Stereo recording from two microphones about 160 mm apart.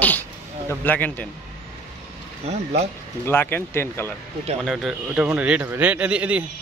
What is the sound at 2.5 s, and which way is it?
Speech, 40° right (ahead or behind).